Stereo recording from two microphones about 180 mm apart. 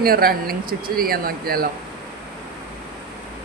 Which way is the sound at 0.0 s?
55° right (ahead or behind).